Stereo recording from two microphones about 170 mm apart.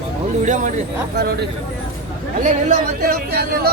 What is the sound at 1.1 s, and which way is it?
Speech, 70° right (ahead or behind).